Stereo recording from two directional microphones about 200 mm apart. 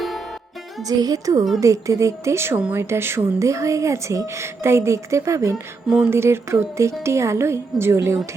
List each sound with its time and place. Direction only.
0.9 s a woman's voice: 20° right (ahead or behind)